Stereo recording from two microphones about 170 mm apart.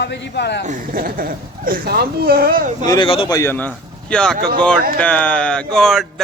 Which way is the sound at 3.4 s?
10° left (ahead or behind).